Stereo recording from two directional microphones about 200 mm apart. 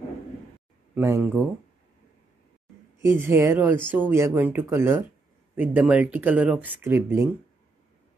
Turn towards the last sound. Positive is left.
turn(degrees=-10)  # may be behind; listen again after turning